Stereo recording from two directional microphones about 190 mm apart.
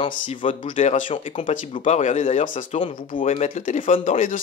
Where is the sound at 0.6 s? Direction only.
40° left (ahead or behind).